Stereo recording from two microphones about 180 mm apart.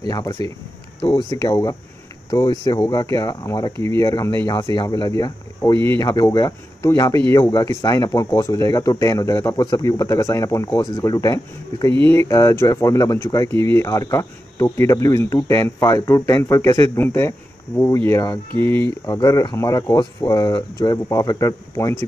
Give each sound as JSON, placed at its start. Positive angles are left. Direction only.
{"t": 0.1, "sound": "speech", "side_deg": 20}